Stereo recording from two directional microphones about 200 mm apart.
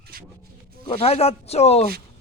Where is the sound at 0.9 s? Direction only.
30° left (ahead or behind).